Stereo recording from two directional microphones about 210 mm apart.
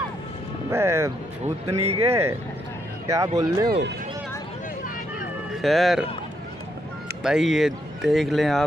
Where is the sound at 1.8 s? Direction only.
30° right (ahead or behind).